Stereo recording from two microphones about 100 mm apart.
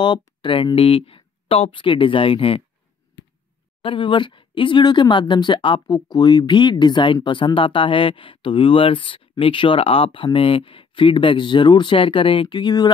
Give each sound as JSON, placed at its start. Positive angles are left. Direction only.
{"t": 0.4, "sound": "speech", "side_deg": 55}
{"t": 0.7, "sound": "speech", "side_deg": 70}
{"t": 3.8, "sound": "speech", "side_deg": 60}
{"t": 5.9, "sound": "speech", "side_deg": 40}